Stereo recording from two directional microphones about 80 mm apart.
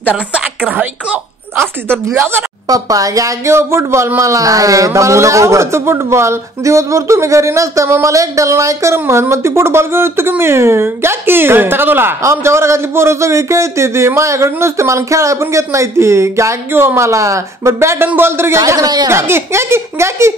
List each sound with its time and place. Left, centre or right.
0.3 s speech: centre
2.0 s speech: right
2.7 s speech: right
18.8 s speech: right
19.0 s speech: right